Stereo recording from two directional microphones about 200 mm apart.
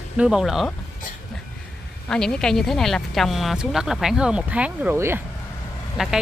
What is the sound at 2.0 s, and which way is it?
Speech, 5° left (ahead or behind).